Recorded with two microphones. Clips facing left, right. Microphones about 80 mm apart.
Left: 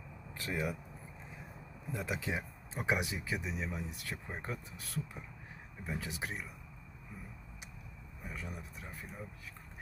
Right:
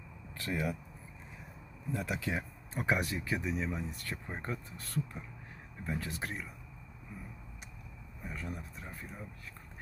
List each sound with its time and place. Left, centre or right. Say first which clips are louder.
0.3 s speech: right 2 dB; centre
1.9 s speech: right 2 dB; centre
8.3 s speech: right 3 dB; centre